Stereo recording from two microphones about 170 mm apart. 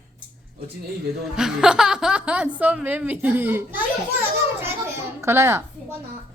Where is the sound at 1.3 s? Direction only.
5° right (ahead or behind).